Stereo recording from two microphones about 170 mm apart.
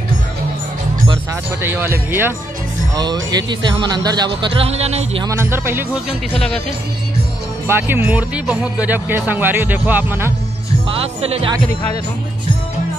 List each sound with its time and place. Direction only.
1.6 s speech: 15° right (ahead or behind)
3.0 s speech: 25° right (ahead or behind)
4.6 s a man's voice: 35° right (ahead or behind)
5.2 s speech: 15° right (ahead or behind)
7.6 s speech: 15° right (ahead or behind)
10.9 s speech: 35° right (ahead or behind)